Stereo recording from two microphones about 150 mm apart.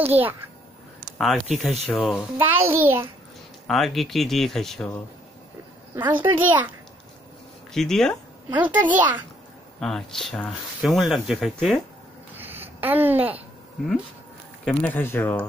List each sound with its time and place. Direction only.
0.0 s a child's voice: 10° right (ahead or behind)
1.1 s speech: centre (ahead or behind)
2.3 s a child's voice: 15° right (ahead or behind)
3.6 s speech: centre (ahead or behind)
5.9 s a child's voice: 30° right (ahead or behind)
7.7 s speech: 5° left (ahead or behind)
8.5 s a child's voice: 10° right (ahead or behind)
9.8 s speech: 5° left (ahead or behind)
12.4 s a sound: 15° right (ahead or behind)
14.6 s speech: 10° left (ahead or behind)